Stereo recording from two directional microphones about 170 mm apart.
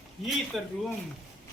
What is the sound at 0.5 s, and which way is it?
Speech, centre (ahead or behind).